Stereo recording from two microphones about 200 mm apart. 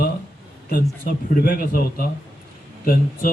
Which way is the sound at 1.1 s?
45° left (ahead or behind).